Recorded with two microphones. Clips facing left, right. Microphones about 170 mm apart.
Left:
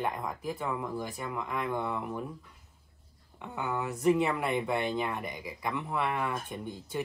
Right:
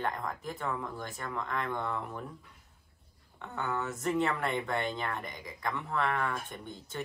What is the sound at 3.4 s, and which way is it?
Speech, 10° left (ahead or behind).